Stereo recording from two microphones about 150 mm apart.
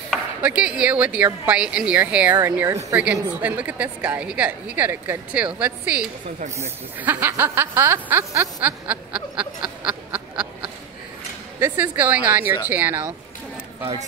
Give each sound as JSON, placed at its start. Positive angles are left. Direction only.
{"t": 0.1, "sound": "a woman's voice", "side_deg": -5}